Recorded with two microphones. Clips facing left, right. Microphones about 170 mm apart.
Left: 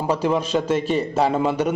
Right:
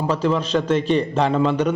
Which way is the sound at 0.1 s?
10° left (ahead or behind).